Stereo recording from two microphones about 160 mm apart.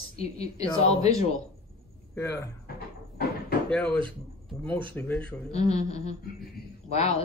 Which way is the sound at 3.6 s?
5° left (ahead or behind).